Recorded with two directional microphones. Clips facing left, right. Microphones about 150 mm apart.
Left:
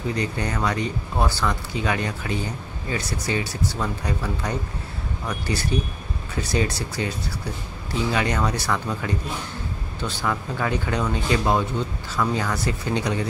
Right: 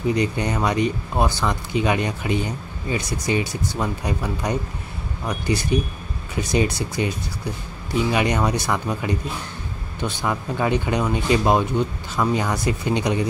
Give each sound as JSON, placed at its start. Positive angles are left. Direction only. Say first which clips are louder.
{"t": 0.1, "sound": "speech", "louder": "right 4 dB", "side_deg": -20}
{"t": 8.1, "sound": "speech", "louder": "right 2 dB", "side_deg": -15}